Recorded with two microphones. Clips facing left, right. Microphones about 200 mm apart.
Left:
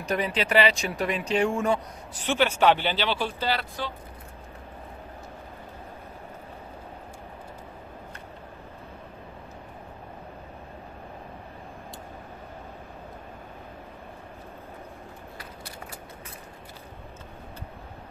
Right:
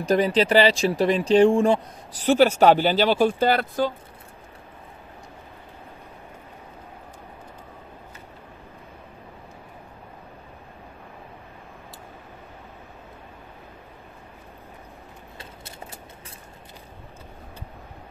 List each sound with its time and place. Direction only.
0.0 s speech: 35° right (ahead or behind)